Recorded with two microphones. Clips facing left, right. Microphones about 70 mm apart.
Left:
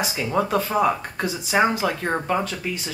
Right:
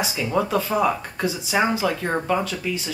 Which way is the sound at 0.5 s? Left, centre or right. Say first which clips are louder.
Even; left.